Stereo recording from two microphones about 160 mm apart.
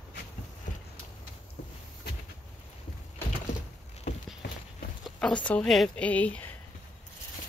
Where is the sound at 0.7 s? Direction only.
50° left (ahead or behind).